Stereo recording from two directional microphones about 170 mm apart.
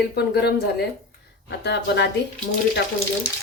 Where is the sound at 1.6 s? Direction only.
85° left.